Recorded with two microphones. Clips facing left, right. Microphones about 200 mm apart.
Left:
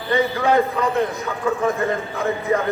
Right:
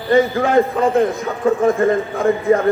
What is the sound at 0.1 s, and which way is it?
Speech, 45° right (ahead or behind).